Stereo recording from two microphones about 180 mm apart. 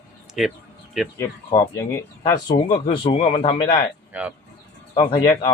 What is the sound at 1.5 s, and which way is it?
Speech, 15° left (ahead or behind).